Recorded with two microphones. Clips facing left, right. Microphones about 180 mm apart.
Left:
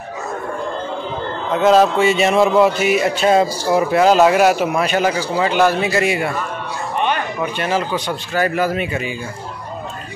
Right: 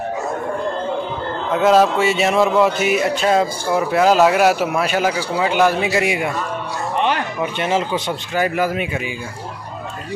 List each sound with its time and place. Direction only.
1.5 s speech: 5° right (ahead or behind)
7.5 s a man's voice: 25° right (ahead or behind)
8.5 s speech: 10° right (ahead or behind)